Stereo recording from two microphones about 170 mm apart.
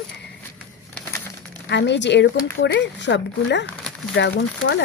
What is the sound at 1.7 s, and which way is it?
Speech, 90° left.